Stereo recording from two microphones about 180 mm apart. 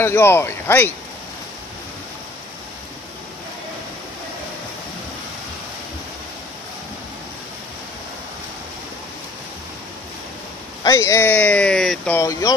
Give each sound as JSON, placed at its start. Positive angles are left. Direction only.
{"t": 0.0, "sound": "speech", "side_deg": 15}
{"t": 10.8, "sound": "speech", "side_deg": 15}
{"t": 12.2, "sound": "speech", "side_deg": 20}